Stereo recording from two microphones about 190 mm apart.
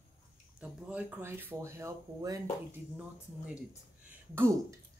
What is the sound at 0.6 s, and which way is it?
A woman's voice, 5° right (ahead or behind).